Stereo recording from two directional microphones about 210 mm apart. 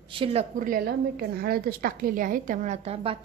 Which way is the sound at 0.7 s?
45° right (ahead or behind).